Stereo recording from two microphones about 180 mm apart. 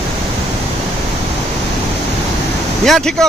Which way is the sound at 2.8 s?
Centre (ahead or behind).